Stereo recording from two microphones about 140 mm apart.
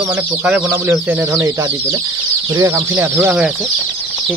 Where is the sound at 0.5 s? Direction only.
15° right (ahead or behind).